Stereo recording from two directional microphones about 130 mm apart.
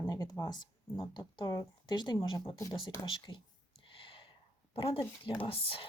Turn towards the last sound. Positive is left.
turn(degrees=45)  # may be behind; listen again after turning